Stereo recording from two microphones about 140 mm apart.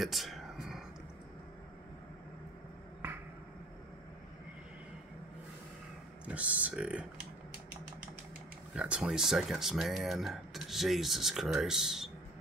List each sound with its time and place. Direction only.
0.0 s a sound: centre (ahead or behind)
6.2 s speech: 10° right (ahead or behind)
8.7 s speech: 5° right (ahead or behind)